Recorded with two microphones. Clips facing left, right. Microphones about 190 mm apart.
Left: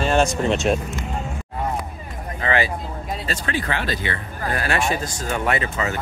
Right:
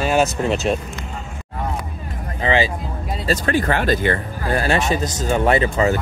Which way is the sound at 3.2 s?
40° right (ahead or behind).